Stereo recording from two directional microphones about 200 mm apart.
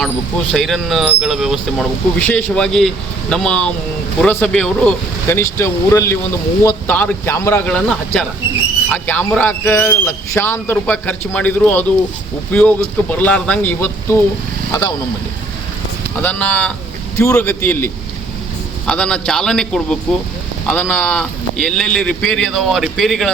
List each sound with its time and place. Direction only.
0.5 s a man's voice: centre (ahead or behind); by 14.9 s 20° left (ahead or behind)
16.2 s a man's voice: 5° left (ahead or behind)